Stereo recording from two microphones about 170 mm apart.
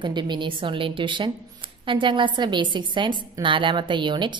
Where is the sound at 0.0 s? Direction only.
25° right (ahead or behind).